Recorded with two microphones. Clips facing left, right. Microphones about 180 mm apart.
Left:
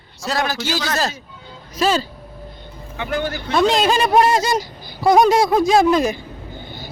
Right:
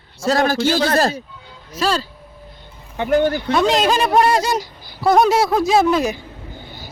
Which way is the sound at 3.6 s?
5° right (ahead or behind).